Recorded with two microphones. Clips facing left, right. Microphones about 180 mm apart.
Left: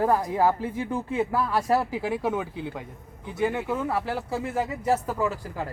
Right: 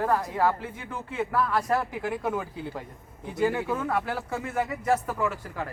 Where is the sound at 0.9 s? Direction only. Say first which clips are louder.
Left 3 dB; 30° left (ahead or behind).